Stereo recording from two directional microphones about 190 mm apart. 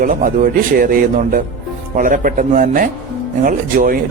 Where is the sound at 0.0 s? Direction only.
45° right (ahead or behind).